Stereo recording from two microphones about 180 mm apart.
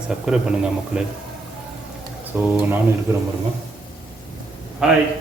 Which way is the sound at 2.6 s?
10° right (ahead or behind).